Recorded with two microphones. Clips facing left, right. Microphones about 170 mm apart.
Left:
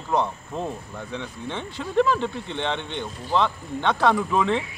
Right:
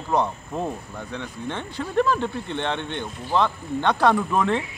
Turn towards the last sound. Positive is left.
turn(degrees=-5)  # may be behind; listen again after turning